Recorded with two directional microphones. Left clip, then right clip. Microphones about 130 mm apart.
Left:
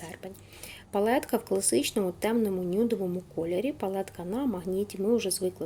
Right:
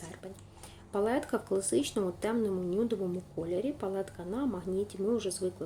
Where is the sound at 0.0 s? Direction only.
20° left (ahead or behind).